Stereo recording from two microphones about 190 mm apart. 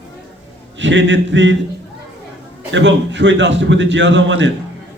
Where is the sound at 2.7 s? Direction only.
70° right (ahead or behind).